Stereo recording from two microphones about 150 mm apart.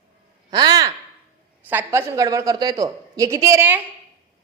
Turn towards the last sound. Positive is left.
turn(degrees=-15)  # may be behind; listen again after turning